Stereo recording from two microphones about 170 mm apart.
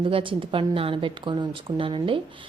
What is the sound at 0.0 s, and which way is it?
Speech, 30° right (ahead or behind).